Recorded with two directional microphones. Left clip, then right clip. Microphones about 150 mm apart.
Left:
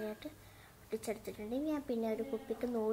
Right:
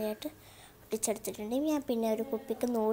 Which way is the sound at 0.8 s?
35° right (ahead or behind).